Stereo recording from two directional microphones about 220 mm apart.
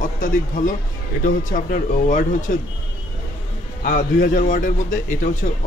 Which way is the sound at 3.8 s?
40° left (ahead or behind).